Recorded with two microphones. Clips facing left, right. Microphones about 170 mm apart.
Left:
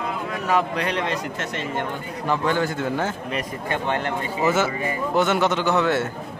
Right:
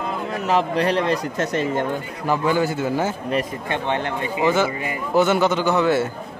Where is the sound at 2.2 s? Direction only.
5° right (ahead or behind).